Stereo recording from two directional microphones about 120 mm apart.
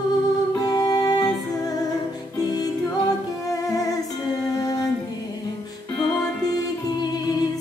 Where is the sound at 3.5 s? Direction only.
30° left (ahead or behind).